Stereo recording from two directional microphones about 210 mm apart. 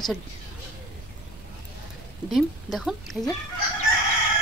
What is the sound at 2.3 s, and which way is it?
Speech, centre (ahead or behind).